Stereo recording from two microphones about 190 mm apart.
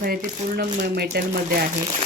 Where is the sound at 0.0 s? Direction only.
50° right (ahead or behind).